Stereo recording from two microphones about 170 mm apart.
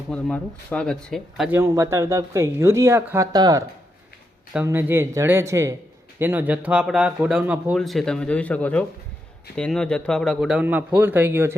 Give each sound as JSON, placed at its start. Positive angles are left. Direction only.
{"t": 0.1, "sound": "speech", "side_deg": 5}
{"t": 1.5, "sound": "speech", "side_deg": -15}
{"t": 4.6, "sound": "speech", "side_deg": -10}